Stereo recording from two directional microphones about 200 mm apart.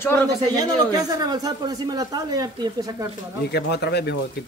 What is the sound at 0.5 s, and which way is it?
Speech, 20° right (ahead or behind).